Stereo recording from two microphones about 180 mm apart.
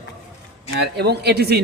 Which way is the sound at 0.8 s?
65° right (ahead or behind).